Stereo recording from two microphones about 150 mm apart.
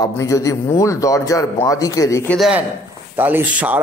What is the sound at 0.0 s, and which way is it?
A man's voice, 20° left (ahead or behind).